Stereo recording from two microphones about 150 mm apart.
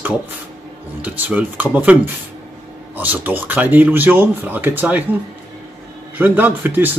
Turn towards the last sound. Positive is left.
turn(degrees=-15)  # may be behind; listen again after turning